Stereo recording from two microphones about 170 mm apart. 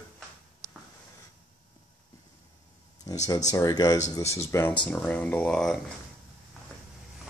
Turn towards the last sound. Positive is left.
turn(degrees=5)  # may be behind; listen again after turning